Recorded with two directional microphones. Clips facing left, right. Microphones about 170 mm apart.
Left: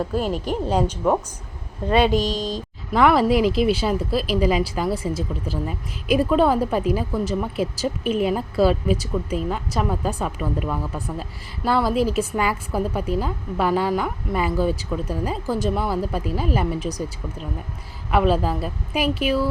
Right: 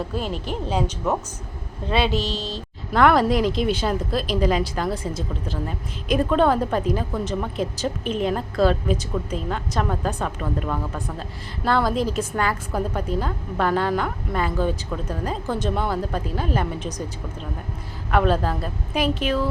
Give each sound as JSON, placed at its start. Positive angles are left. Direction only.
{"t": 0.1, "sound": "a woman's voice", "side_deg": 40}
{"t": 0.4, "sound": "a woman's voice", "side_deg": 10}
{"t": 1.9, "sound": "a woman's voice", "side_deg": 45}
{"t": 2.1, "sound": "a woman's voice", "side_deg": 15}
{"t": 2.9, "sound": "a woman's voice", "side_deg": 5}
{"t": 18.1, "sound": "a woman's voice", "side_deg": 5}